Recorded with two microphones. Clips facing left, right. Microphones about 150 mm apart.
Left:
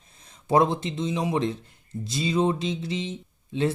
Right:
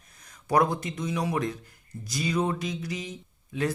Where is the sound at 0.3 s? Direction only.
25° left (ahead or behind).